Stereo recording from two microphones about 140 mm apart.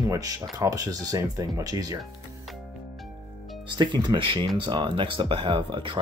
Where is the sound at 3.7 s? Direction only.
30° right (ahead or behind).